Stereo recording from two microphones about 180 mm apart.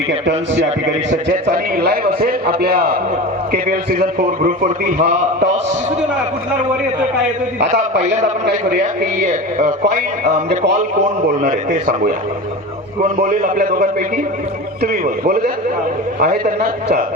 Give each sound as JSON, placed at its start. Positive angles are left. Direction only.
{"t": 0.1, "sound": "speech", "side_deg": -80}
{"t": 1.1, "sound": "a man's voice", "side_deg": -50}
{"t": 8.4, "sound": "a man's voice", "side_deg": -65}
{"t": 9.3, "sound": "a man's voice", "side_deg": -45}
{"t": 13.1, "sound": "a man's voice", "side_deg": -50}